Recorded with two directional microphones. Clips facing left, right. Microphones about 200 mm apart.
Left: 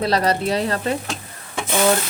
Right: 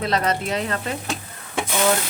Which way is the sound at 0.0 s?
35° left (ahead or behind).